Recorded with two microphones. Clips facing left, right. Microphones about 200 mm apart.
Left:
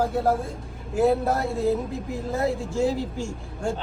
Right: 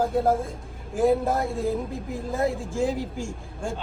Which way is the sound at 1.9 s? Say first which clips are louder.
Left 1 dB; 50° right (ahead or behind).